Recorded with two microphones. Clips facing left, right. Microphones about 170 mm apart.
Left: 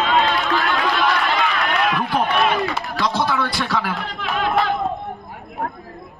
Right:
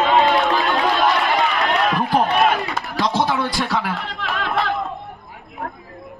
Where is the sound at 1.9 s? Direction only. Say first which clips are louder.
Right 2 dB; 45° right (ahead or behind).